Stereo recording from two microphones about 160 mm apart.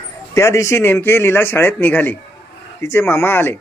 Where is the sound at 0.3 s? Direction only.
20° left (ahead or behind).